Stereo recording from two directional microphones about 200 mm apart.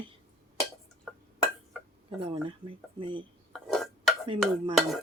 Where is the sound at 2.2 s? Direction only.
25° right (ahead or behind).